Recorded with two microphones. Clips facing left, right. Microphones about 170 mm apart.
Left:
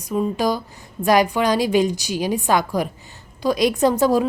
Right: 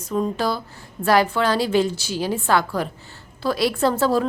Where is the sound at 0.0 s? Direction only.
15° left (ahead or behind).